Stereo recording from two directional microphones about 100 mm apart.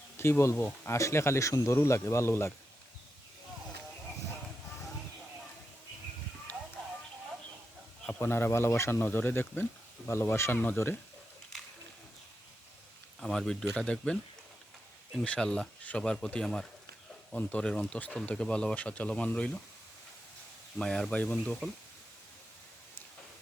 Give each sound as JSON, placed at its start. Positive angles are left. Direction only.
{"t": 0.2, "sound": "speech", "side_deg": 25}
{"t": 8.2, "sound": "speech", "side_deg": 25}
{"t": 13.1, "sound": "speech", "side_deg": 5}
{"t": 15.2, "sound": "speech", "side_deg": 10}
{"t": 20.7, "sound": "speech", "side_deg": 5}